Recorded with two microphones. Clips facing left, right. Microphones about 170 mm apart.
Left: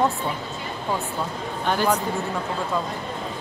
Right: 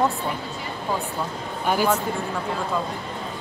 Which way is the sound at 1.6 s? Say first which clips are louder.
Right 1 dB; 10° right (ahead or behind).